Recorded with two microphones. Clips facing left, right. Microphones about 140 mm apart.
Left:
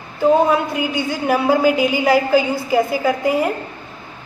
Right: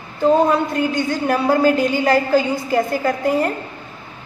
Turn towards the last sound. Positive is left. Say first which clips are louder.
# left 1 dB
turn(degrees=5)  # may be behind; listen again after turning